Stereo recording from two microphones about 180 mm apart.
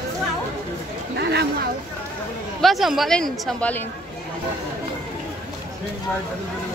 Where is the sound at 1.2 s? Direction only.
65° right (ahead or behind).